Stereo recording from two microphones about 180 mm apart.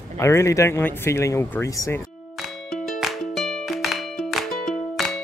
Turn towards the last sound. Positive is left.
turn(degrees=0)  # may be behind; listen again after turning